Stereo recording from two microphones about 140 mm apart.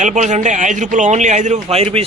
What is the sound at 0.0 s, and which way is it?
A man's voice, 60° right (ahead or behind).